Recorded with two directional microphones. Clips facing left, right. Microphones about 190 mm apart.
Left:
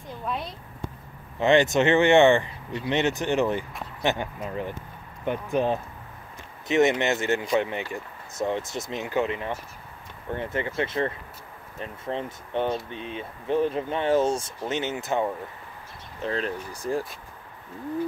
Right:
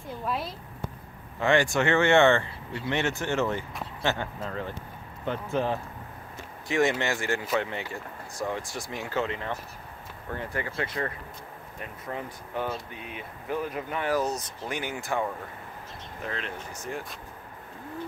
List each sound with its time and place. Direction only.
0.2 s speech: 5° right (ahead or behind)
1.4 s speech: 20° left (ahead or behind)
16.2 s speech: 35° left (ahead or behind)